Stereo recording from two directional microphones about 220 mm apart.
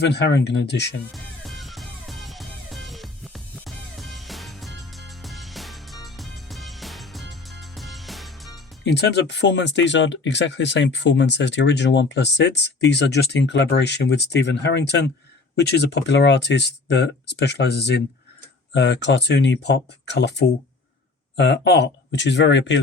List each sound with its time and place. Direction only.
0.0 s speech: 50° left (ahead or behind)
1.1 s music: centre (ahead or behind)
8.8 s speech: 50° left (ahead or behind)